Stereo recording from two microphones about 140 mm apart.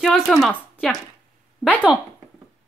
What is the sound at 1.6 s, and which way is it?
Speech, 10° left (ahead or behind).